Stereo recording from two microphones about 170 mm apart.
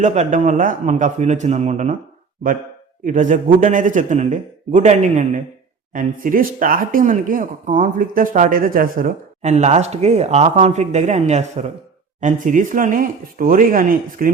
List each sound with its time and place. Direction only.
0.0 s speech: 45° right (ahead or behind)
3.0 s speech: 50° right (ahead or behind)